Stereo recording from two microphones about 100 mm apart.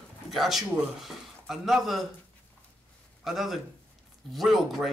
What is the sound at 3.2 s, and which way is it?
A man's voice, centre (ahead or behind).